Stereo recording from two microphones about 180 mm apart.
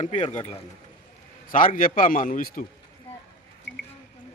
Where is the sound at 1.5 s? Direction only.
50° left (ahead or behind).